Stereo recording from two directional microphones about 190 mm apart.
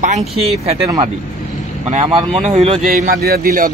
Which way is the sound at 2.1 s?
30° right (ahead or behind).